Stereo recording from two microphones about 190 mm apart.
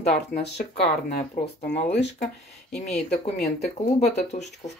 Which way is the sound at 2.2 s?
35° left (ahead or behind).